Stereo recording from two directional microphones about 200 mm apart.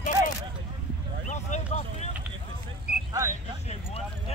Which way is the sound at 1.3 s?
35° left (ahead or behind).